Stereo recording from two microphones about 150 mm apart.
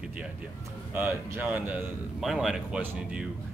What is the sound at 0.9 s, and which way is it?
A man's voice, 15° right (ahead or behind).